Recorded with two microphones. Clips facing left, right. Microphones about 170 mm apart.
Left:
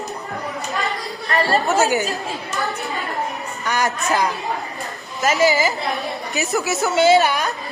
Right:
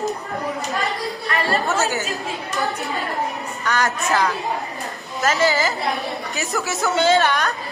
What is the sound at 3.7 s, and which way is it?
Speech, 10° left (ahead or behind).